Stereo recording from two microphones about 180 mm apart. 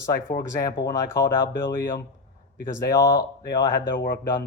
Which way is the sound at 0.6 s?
20° left (ahead or behind).